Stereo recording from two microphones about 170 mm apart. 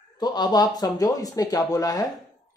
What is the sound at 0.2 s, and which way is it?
Speech, 25° left (ahead or behind).